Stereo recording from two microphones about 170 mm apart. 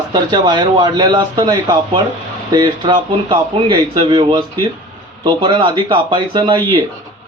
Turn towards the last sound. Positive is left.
turn(degrees=-25)  # may be behind; listen again after turning